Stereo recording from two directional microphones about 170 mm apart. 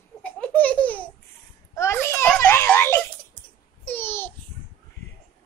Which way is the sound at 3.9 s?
15° left (ahead or behind).